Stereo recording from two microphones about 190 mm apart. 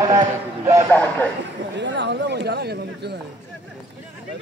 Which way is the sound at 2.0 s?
60° right (ahead or behind).